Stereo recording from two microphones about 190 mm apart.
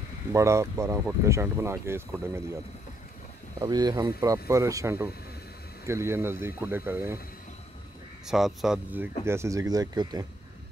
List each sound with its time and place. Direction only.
0.3 s speech: 15° right (ahead or behind)
3.6 s speech: 20° right (ahead or behind)
8.3 s speech: centre (ahead or behind); by 10.2 s 20° right (ahead or behind)